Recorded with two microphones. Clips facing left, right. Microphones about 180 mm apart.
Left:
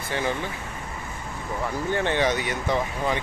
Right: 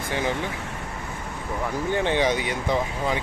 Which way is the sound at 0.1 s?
15° right (ahead or behind).